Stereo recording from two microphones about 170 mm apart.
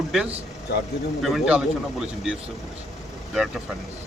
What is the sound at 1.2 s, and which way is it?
Speech, 5° right (ahead or behind).